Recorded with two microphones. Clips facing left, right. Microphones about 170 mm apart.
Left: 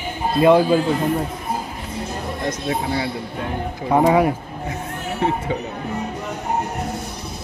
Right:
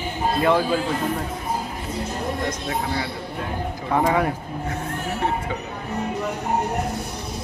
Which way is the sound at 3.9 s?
20° left (ahead or behind).